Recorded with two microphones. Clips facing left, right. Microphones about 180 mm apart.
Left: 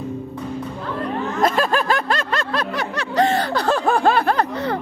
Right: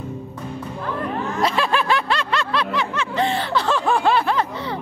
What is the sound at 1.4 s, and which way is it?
Snicker, 45° left (ahead or behind).